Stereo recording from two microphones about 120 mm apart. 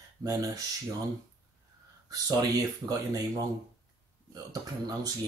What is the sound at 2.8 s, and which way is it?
Speech, 30° right (ahead or behind).